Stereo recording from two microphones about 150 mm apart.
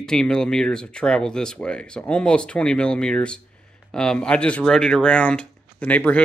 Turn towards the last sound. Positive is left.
turn(degrees=10)  # may be behind; listen again after turning